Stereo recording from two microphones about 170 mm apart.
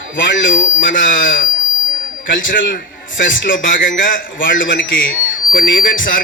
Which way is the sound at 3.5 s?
50° left (ahead or behind).